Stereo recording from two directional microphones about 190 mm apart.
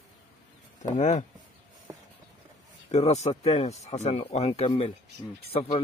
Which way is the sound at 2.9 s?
35° left (ahead or behind).